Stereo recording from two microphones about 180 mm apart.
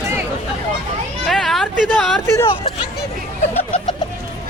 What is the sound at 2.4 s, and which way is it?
Hubbub, 30° left (ahead or behind).